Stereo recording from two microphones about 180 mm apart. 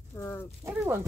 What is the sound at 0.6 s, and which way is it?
Speech, 10° right (ahead or behind).